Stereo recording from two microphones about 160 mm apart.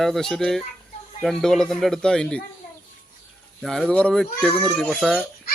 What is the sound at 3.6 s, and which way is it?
Speech, 5° left (ahead or behind).